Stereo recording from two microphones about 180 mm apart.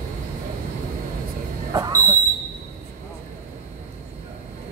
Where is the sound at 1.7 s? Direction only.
20° right (ahead or behind).